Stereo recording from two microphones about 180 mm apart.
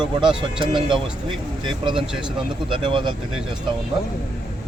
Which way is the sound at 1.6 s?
30° right (ahead or behind).